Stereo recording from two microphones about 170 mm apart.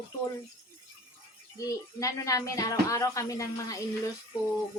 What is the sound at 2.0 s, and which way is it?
Speech, 20° left (ahead or behind).